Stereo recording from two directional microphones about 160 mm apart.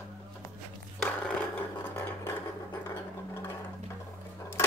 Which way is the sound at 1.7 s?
15° left (ahead or behind).